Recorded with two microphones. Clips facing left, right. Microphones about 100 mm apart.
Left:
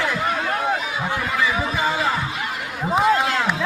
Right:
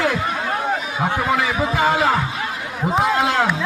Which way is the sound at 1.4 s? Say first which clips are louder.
Right 3 dB; 65° right (ahead or behind).